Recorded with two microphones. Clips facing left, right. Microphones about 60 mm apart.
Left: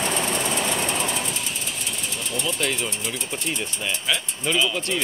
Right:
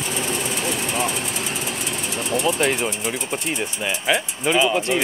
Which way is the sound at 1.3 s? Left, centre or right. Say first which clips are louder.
Right 4 dB; right.